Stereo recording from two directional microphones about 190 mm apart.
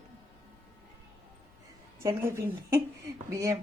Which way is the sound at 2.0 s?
15° right (ahead or behind).